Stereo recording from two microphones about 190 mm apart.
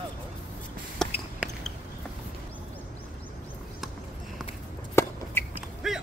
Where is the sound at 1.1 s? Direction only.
5° right (ahead or behind).